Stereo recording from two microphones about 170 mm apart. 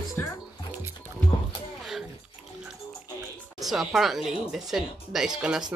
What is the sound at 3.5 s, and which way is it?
Speech, centre (ahead or behind).